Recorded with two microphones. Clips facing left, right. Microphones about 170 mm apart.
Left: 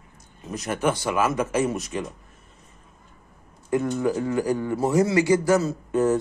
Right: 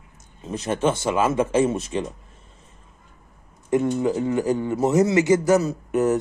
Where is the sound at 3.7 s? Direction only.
20° right (ahead or behind).